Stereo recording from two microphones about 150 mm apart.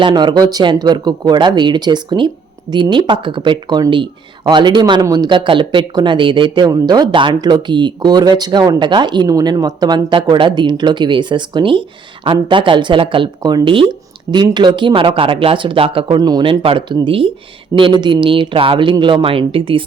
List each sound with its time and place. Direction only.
0.0 s speech: 30° right (ahead or behind)